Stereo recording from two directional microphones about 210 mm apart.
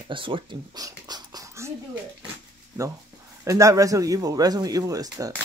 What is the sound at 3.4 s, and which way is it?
Speech, 15° right (ahead or behind).